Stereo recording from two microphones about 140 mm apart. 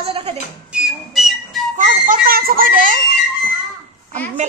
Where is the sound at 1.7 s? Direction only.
75° right (ahead or behind).